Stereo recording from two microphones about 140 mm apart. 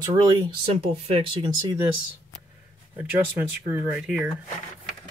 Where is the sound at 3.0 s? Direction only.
15° right (ahead or behind).